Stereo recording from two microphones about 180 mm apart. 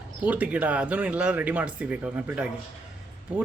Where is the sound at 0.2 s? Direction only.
10° right (ahead or behind).